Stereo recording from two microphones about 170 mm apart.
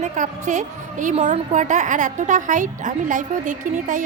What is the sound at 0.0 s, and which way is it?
A woman's voice, 45° right (ahead or behind).